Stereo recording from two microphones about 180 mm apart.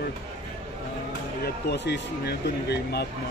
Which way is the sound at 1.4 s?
65° left (ahead or behind).